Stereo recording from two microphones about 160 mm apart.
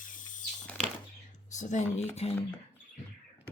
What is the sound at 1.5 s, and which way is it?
Speech, 50° left (ahead or behind).